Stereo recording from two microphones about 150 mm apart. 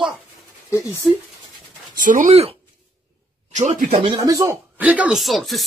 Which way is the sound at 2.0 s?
60° right (ahead or behind).